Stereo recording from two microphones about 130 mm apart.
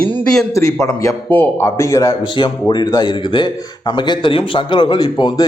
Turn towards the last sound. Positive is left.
turn(degrees=35)  # may be behind; listen again after turning